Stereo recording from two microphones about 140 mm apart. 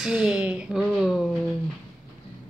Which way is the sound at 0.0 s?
Centre (ahead or behind).